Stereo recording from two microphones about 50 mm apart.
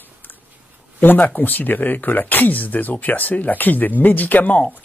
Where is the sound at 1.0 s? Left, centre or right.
Left.